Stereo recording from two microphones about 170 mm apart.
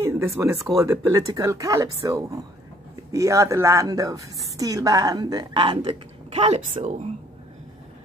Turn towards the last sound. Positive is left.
turn(degrees=-40)  # may be behind; listen again after turning